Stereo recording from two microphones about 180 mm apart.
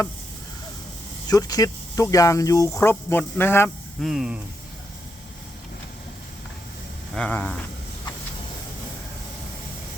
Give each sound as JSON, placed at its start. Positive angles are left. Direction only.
{"t": 1.3, "sound": "speech", "side_deg": 20}
{"t": 4.0, "sound": "speech", "side_deg": -5}
{"t": 7.2, "sound": "speech", "side_deg": 10}